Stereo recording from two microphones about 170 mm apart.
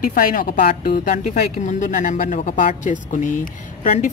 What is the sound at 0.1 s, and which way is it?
Speech, 55° left (ahead or behind).